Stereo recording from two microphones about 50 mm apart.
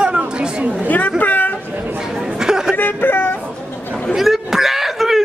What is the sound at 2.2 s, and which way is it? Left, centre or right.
Chatter, centre.